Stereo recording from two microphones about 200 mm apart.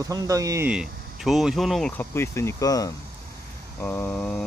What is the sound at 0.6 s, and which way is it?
Speech, 5° right (ahead or behind).